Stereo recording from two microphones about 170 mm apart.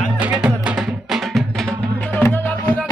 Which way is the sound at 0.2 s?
5° right (ahead or behind).